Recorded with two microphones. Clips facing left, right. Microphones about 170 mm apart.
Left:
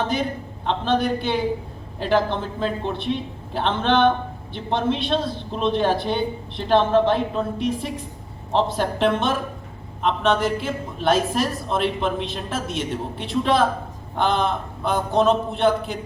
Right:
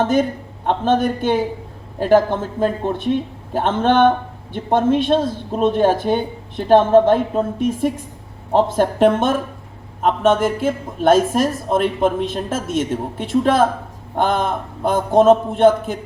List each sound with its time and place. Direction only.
0.0 s a man's voice: 45° right (ahead or behind)